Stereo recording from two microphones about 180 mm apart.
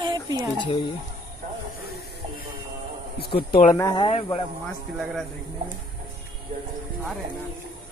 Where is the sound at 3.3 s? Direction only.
55° left (ahead or behind).